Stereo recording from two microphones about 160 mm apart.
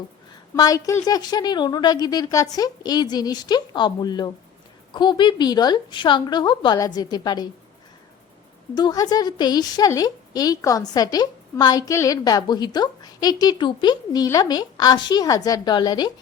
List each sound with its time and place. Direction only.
0.5 s a woman's voice: 20° left (ahead or behind)
8.7 s a woman's voice: 25° left (ahead or behind)